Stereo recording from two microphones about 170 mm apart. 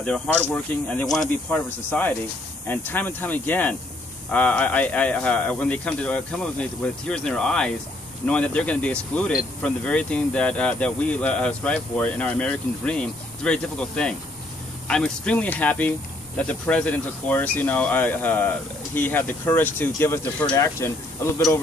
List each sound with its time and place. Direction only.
0.5 s speech: 10° left (ahead or behind)